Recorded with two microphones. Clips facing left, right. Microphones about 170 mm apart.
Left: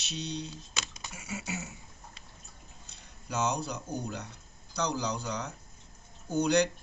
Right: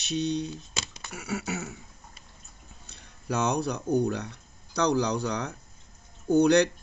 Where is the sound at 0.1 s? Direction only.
55° right (ahead or behind).